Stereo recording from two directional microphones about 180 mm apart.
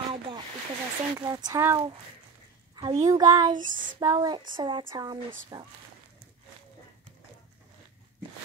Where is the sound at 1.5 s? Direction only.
15° right (ahead or behind).